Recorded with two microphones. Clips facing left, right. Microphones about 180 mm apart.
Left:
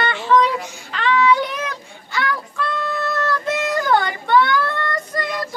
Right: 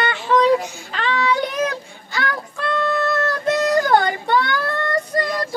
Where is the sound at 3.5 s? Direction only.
40° right (ahead or behind).